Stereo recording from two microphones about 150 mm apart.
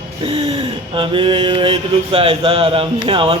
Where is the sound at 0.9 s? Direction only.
35° right (ahead or behind).